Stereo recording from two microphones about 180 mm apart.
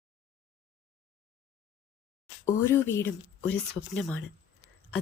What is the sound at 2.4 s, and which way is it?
Speech, 15° left (ahead or behind).